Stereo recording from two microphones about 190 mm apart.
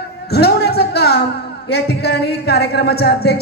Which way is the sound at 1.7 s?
60° left (ahead or behind).